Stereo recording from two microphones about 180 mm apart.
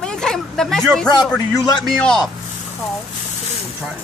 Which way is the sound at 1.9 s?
Centre (ahead or behind).